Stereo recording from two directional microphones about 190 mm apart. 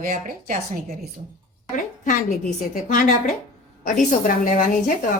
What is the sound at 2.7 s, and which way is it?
A woman's voice, 45° left (ahead or behind).